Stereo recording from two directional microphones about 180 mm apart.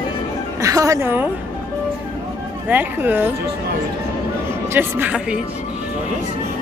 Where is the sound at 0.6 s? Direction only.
15° right (ahead or behind).